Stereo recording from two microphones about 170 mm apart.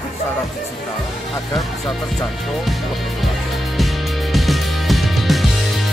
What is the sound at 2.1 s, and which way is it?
Music, centre (ahead or behind).